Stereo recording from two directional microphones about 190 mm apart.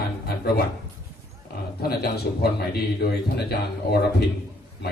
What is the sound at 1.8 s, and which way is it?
Speech, 55° left (ahead or behind).